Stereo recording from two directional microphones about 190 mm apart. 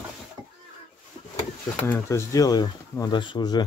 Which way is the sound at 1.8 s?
15° left (ahead or behind).